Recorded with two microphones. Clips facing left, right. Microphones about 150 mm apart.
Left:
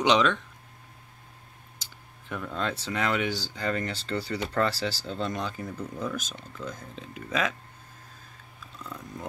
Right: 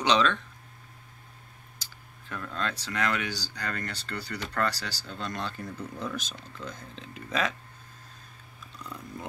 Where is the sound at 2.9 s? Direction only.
20° left (ahead or behind); by 7.5 s 5° left (ahead or behind).